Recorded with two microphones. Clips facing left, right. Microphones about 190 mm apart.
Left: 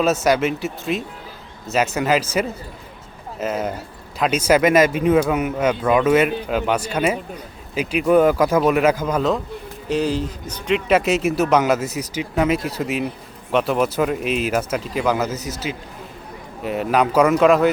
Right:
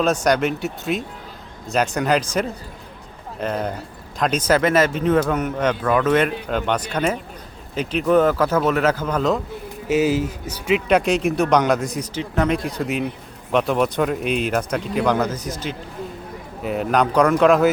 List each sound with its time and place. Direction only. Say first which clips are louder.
0.0 s a man's voice: left 1 dB; 5° left (ahead or behind)
9.9 s a man's voice: right 2 dB; 5° right (ahead or behind)